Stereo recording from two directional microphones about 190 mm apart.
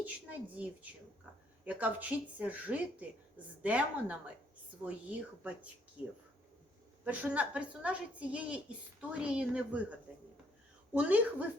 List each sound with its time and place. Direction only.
0.5 s speech: 10° right (ahead or behind)